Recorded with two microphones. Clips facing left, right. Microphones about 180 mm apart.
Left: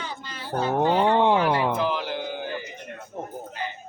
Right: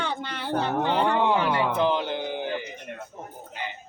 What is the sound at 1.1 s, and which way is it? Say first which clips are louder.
Speech: left 3 dB; 30° left (ahead or behind).